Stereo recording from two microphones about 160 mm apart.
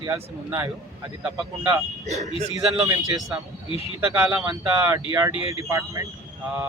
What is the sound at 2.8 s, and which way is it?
Speech, 20° right (ahead or behind).